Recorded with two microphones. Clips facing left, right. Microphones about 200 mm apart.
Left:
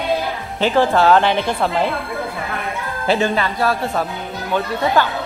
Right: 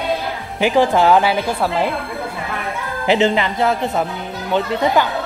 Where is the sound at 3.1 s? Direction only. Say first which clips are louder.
Right 2 dB; 20° right (ahead or behind).